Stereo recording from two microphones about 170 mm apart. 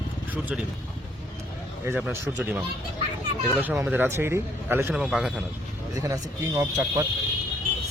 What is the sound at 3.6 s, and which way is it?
A man's voice, 5° right (ahead or behind).